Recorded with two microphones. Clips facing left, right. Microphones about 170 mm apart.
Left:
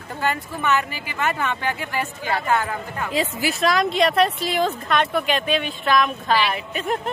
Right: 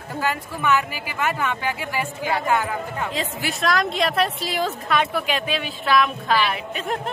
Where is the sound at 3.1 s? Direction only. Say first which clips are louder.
Left 4 dB; 5° left (ahead or behind).